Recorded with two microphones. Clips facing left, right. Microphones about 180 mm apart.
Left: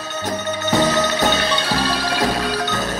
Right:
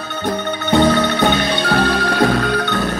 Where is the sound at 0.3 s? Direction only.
55° right (ahead or behind).